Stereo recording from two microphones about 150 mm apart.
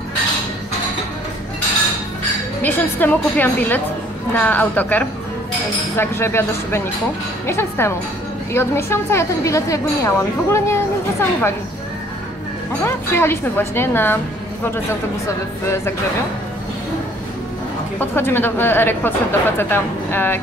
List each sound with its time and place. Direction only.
2.6 s a woman's voice: 10° left (ahead or behind)
12.8 s a woman's voice: 15° left (ahead or behind)
17.9 s a woman's voice: 15° left (ahead or behind)